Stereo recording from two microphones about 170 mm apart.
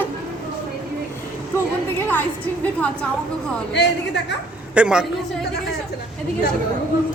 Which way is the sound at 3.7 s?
90° left.